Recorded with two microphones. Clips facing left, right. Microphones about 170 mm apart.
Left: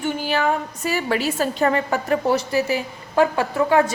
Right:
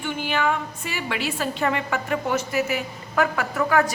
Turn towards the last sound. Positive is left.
turn(degrees=25)  # may be behind; listen again after turning